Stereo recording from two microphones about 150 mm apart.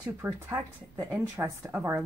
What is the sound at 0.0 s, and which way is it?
Speech, 15° right (ahead or behind).